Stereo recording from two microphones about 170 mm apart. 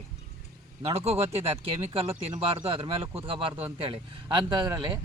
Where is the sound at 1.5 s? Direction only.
35° right (ahead or behind).